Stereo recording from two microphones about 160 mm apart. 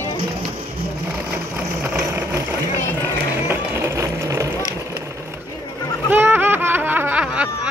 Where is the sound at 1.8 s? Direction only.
15° right (ahead or behind).